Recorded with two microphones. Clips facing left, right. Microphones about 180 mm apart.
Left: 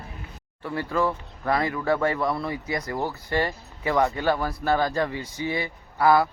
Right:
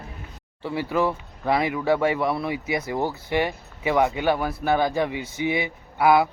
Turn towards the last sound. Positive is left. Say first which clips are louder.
# right 1 dB
turn(degrees=-10)  # may be behind; listen again after turning